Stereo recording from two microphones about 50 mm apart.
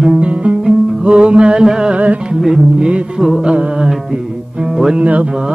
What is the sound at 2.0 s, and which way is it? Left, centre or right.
Music, right.